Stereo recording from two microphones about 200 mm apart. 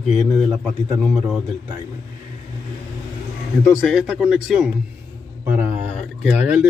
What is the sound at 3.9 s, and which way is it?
A man's voice, centre (ahead or behind).